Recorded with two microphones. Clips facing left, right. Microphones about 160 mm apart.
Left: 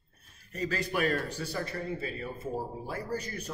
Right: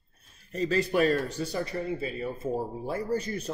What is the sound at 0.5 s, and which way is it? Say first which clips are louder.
A man's voice: right 6 dB; 25° right (ahead or behind).